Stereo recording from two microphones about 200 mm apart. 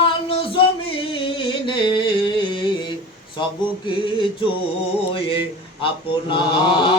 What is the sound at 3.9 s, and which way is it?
Mantra, 25° left (ahead or behind).